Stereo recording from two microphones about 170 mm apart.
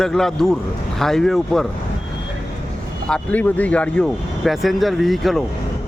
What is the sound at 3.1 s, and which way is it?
Speech, 10° left (ahead or behind).